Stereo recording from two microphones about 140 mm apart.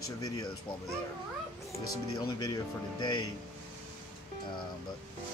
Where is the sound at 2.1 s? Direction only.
30° left (ahead or behind).